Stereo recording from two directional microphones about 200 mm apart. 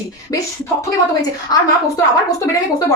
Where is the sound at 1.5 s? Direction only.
20° left (ahead or behind).